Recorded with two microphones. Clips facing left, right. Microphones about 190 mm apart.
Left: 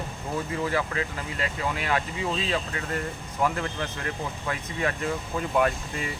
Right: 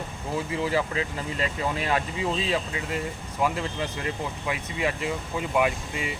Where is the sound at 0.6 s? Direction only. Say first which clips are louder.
Right 2 dB; 20° right (ahead or behind).